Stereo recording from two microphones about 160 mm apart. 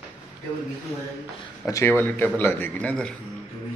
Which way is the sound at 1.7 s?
15° left (ahead or behind).